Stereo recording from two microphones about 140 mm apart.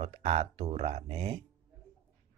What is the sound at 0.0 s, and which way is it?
Speech, 45° right (ahead or behind).